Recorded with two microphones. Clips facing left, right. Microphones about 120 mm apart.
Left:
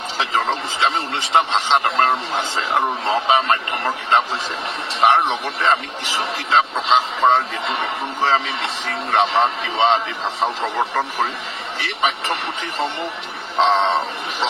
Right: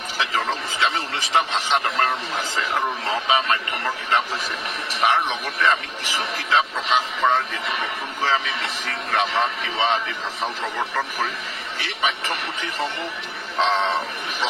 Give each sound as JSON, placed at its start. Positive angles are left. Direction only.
{"t": 0.2, "sound": "speech", "side_deg": 25}